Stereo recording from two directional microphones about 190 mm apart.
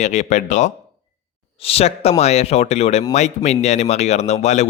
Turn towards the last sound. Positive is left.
turn(degrees=35)  # may be behind; listen again after turning